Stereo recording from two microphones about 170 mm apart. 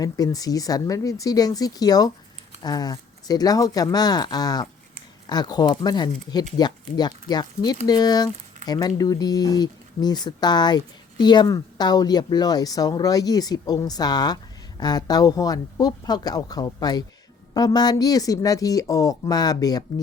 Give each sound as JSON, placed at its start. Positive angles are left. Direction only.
{"t": 0.0, "sound": "speech", "side_deg": 20}